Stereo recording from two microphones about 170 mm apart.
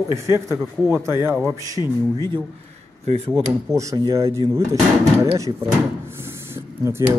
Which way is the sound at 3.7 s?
20° right (ahead or behind).